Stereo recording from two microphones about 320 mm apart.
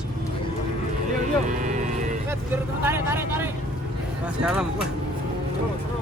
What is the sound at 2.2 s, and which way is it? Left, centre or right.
Vehicle, centre.